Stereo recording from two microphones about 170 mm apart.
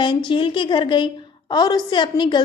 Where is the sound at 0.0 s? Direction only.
30° left (ahead or behind).